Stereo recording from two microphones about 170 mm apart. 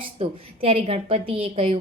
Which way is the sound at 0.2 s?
35° right (ahead or behind).